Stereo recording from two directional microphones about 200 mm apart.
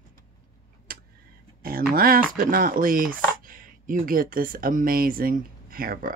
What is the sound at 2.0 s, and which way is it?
Speech, 45° right (ahead or behind).